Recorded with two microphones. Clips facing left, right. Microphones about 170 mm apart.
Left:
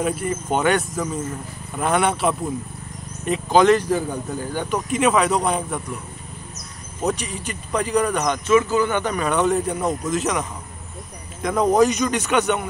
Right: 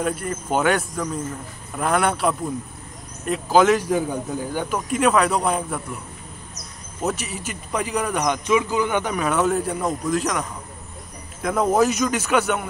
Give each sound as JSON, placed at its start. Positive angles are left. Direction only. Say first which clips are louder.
{"t": 0.0, "sound": "speech", "louder": "left 2 dB", "side_deg": 5}
{"t": 7.0, "sound": "speech", "louder": "left 2 dB", "side_deg": -5}
{"t": 11.4, "sound": "speech", "louder": "left 2 dB", "side_deg": -5}